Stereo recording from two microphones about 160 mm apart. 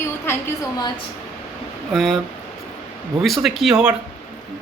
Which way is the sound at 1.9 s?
Centre (ahead or behind).